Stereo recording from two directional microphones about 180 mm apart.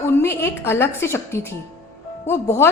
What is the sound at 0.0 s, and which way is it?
A woman's voice, 15° left (ahead or behind).